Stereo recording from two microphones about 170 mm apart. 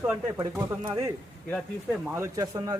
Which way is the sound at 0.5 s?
10° right (ahead or behind).